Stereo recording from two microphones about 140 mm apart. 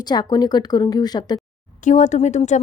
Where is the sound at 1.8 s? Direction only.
65° left (ahead or behind).